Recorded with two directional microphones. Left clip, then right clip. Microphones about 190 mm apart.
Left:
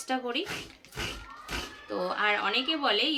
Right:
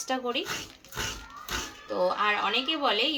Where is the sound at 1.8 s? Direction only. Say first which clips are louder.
Right 2 dB; 15° left (ahead or behind).